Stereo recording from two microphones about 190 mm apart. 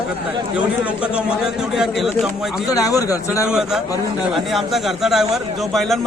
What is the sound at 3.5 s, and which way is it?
A man's voice, 5° right (ahead or behind).